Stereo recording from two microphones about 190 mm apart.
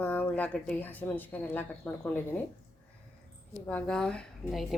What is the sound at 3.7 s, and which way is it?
Speech, 5° left (ahead or behind).